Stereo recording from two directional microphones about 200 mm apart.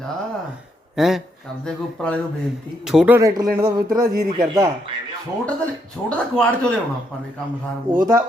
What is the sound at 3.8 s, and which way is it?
Speech, 45° right (ahead or behind).